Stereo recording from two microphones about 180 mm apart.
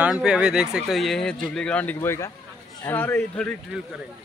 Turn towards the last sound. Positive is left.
turn(degrees=-5)  # may be behind; listen again after turning